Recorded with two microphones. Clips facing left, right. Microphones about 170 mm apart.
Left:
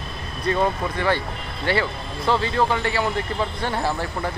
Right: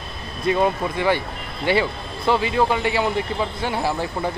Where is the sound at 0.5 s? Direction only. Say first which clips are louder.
Right 2 dB; 15° right (ahead or behind).